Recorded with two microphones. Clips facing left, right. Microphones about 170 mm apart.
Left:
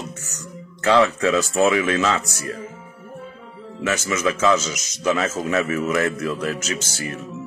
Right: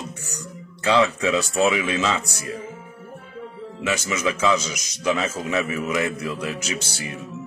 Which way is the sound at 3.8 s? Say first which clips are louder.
Left 2 dB; 15° right (ahead or behind).